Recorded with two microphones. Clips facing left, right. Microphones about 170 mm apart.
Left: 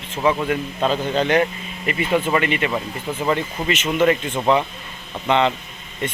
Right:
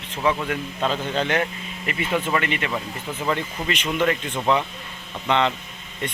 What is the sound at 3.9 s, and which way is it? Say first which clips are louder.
Speech: left 5 dB; 20° left (ahead or behind).